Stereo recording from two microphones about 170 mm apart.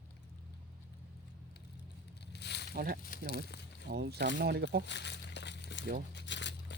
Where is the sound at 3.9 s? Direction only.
75° right (ahead or behind).